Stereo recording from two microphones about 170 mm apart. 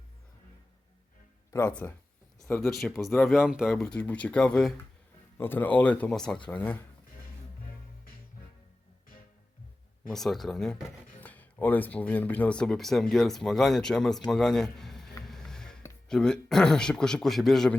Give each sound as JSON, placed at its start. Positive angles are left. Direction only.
{"t": 1.5, "sound": "speech", "side_deg": 20}
{"t": 10.1, "sound": "a man's voice", "side_deg": 0}
{"t": 15.3, "sound": "a sound", "side_deg": 5}
{"t": 16.0, "sound": "speech", "side_deg": 5}